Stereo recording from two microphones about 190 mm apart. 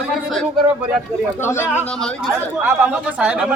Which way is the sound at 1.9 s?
5° left (ahead or behind).